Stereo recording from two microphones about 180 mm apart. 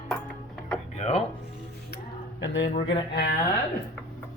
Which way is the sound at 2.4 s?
80° left.